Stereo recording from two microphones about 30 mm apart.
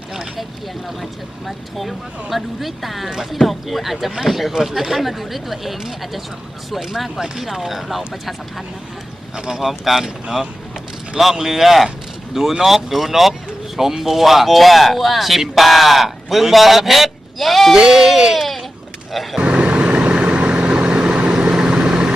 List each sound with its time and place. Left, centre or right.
1.5 s speech: centre
7.0 s speech: centre
9.3 s speech: centre
9.6 s speech: centre
11.3 s speech: centre
17.8 s speech: centre
18.3 s a sound: centre
19.1 s speech: centre
19.5 s vehicle: right